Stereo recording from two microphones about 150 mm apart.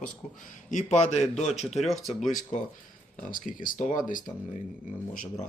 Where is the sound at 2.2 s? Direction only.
55° left (ahead or behind).